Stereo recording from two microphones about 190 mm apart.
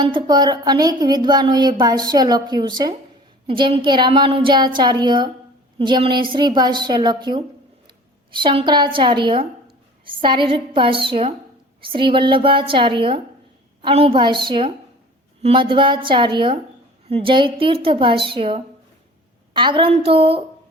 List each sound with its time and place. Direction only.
0.0 s a woman's voice: 25° right (ahead or behind)